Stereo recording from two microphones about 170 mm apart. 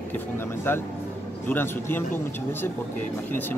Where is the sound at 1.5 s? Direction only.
10° left (ahead or behind).